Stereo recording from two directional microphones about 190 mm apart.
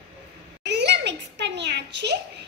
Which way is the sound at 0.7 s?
65° right (ahead or behind).